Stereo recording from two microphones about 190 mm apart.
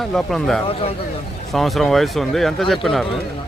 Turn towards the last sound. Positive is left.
turn(degrees=0)  # may be behind; listen again after turning